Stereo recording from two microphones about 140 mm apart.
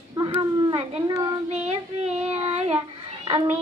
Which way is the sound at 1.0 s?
30° right (ahead or behind).